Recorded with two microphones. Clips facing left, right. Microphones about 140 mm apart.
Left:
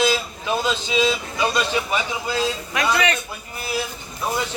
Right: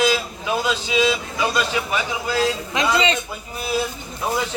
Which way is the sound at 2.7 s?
20° right (ahead or behind).